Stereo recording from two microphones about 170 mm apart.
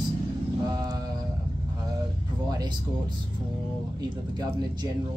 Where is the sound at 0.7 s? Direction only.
20° right (ahead or behind).